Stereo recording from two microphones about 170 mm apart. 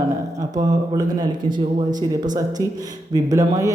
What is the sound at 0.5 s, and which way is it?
Speech, 25° right (ahead or behind).